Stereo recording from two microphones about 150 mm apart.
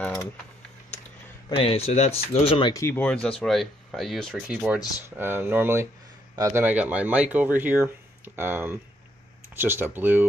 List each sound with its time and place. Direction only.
1.5 s speech: 40° left (ahead or behind)
2.7 s speech: 15° left (ahead or behind)
4.5 s speech: 10° right (ahead or behind)